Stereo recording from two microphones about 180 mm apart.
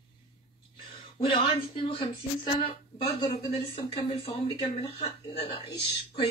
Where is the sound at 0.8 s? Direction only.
25° left (ahead or behind).